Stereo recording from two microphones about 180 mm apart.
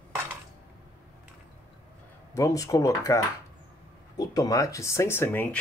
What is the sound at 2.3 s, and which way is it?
Speech, 20° left (ahead or behind).